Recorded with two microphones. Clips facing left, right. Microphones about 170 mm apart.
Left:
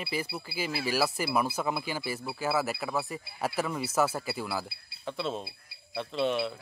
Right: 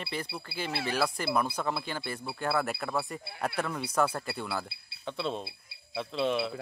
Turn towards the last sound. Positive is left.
turn(degrees=0)  # may be behind; listen again after turning